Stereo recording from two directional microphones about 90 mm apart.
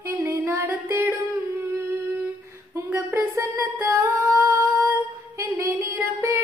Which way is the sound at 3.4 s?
35° right (ahead or behind).